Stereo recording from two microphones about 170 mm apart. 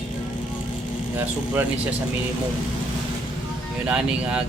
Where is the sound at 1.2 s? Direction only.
10° right (ahead or behind).